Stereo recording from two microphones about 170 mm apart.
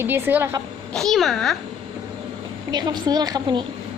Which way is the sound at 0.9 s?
Centre (ahead or behind).